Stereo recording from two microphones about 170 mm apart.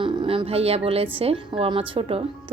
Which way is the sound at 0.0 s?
30° right (ahead or behind).